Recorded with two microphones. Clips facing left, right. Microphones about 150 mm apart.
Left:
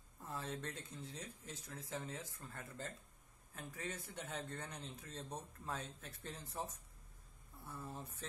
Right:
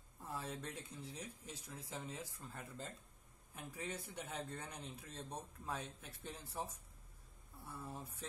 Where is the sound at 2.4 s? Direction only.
15° right (ahead or behind).